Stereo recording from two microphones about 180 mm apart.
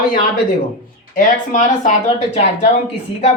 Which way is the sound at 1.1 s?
45° left (ahead or behind).